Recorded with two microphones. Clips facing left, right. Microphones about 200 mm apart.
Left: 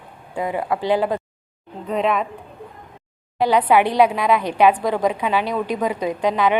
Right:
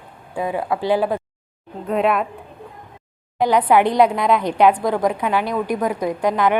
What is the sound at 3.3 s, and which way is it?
Speech, 15° right (ahead or behind).